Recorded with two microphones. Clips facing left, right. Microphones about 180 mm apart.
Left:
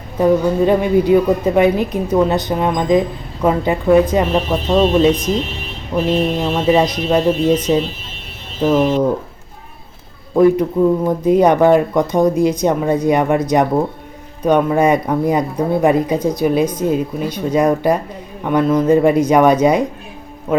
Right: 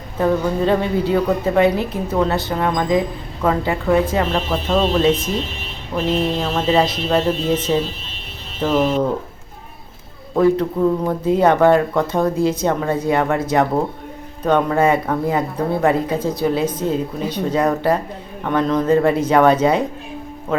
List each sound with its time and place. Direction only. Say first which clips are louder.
0.2 s speech: left 4 dB; 15° left (ahead or behind)
6.4 s speech: left 3 dB; 15° left (ahead or behind)
8.6 s speech: left 3 dB; 15° left (ahead or behind)
10.3 s speech: left 4 dB; 10° left (ahead or behind)